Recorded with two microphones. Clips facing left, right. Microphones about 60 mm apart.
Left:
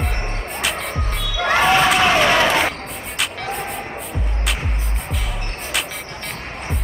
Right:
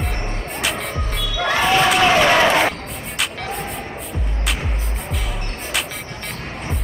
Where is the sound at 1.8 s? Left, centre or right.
Centre.